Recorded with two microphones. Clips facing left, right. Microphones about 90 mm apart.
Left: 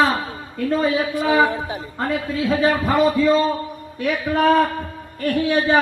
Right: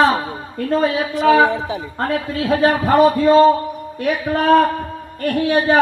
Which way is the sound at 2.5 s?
50° right (ahead or behind).